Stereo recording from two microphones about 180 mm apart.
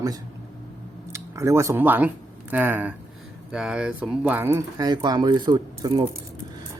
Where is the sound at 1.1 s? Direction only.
15° right (ahead or behind).